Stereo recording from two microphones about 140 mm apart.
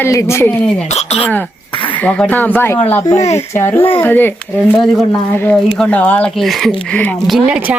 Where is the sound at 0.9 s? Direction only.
50° left (ahead or behind).